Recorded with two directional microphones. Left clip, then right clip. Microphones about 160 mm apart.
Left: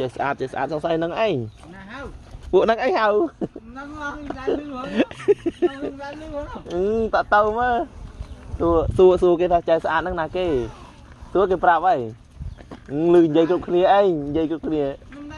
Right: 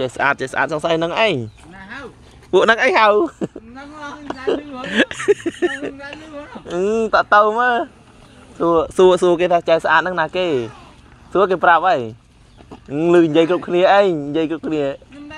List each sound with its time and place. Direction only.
0.0 s speech: 15° right (ahead or behind)
2.5 s speech: centre (ahead or behind)
2.9 s speech: 15° right (ahead or behind)
4.8 s speech: 5° right (ahead or behind)
6.8 s speech: 20° right (ahead or behind)